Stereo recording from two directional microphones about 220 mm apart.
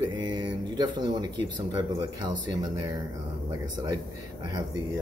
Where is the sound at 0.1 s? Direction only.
20° right (ahead or behind).